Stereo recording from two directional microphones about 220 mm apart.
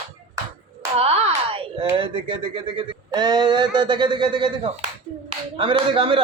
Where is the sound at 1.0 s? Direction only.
25° right (ahead or behind).